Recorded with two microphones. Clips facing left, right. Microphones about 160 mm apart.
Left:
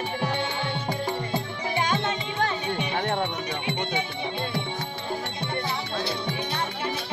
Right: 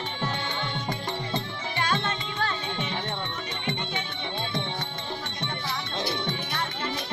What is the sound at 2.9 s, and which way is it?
Music, 55° left (ahead or behind).